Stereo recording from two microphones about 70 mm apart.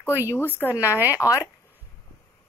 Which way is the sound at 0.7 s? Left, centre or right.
Right.